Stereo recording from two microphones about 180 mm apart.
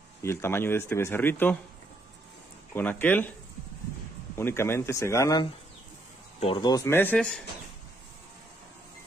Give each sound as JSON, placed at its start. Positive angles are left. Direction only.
{"t": 0.2, "sound": "speech", "side_deg": 15}
{"t": 2.7, "sound": "speech", "side_deg": 10}
{"t": 4.4, "sound": "speech", "side_deg": 15}